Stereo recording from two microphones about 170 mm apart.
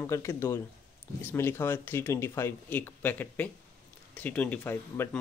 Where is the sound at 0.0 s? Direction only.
15° left (ahead or behind).